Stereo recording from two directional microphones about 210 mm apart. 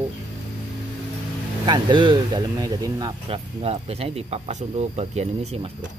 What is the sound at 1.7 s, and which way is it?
Speech, 20° right (ahead or behind).